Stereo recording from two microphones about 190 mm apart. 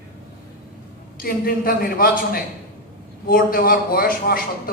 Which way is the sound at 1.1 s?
50° left (ahead or behind).